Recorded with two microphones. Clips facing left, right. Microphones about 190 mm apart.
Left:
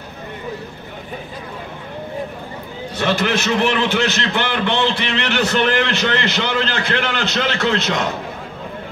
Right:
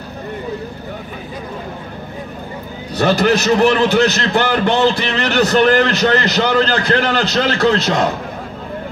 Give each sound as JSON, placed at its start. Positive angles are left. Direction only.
{"t": 3.0, "sound": "a man's voice", "side_deg": -40}